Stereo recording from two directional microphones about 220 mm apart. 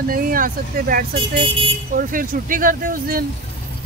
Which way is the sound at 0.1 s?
40° right (ahead or behind).